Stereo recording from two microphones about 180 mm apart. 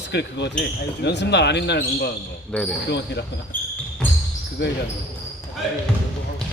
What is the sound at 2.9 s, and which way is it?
Speech, 70° left (ahead or behind).